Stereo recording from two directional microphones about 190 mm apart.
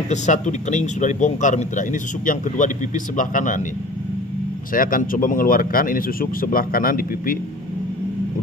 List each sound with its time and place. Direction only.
0.1 s a man's voice: 40° left (ahead or behind)
4.7 s speech: 45° left (ahead or behind)